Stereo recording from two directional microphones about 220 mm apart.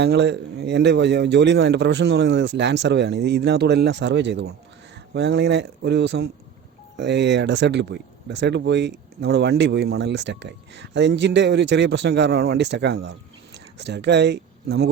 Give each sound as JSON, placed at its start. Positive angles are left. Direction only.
{"t": 0.0, "sound": "speech", "side_deg": -50}